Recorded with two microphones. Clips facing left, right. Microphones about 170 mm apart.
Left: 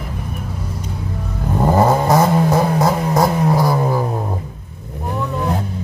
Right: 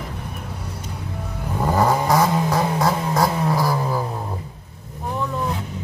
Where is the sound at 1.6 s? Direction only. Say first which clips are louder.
Left 4 dB; 25° left (ahead or behind).